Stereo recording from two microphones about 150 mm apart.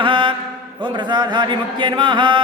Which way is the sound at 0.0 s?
35° right (ahead or behind).